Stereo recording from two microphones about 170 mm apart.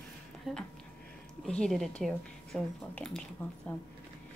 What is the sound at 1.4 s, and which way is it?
Speech, 5° left (ahead or behind).